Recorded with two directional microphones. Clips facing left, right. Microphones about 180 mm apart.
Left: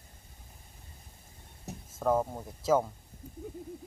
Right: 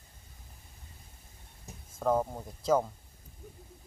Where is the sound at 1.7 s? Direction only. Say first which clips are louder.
Left 8 dB; 70° left (ahead or behind).